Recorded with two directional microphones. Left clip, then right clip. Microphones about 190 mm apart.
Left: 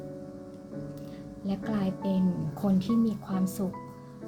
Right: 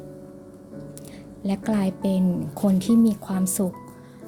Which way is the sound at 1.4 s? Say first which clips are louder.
Right 7 dB; 40° right (ahead or behind).